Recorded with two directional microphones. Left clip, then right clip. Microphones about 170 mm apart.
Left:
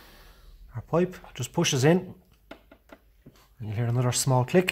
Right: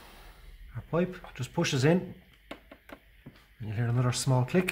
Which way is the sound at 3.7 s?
55° left (ahead or behind).